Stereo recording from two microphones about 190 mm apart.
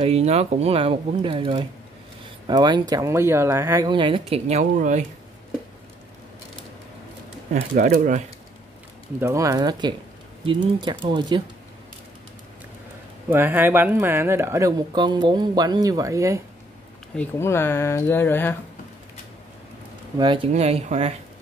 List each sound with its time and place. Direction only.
0.0 s speech: 30° right (ahead or behind)
7.7 s speech: 45° right (ahead or behind)
9.2 s speech: 15° right (ahead or behind)
13.3 s speech: 10° right (ahead or behind)
17.1 s speech: 10° left (ahead or behind)
20.2 s speech: 25° right (ahead or behind)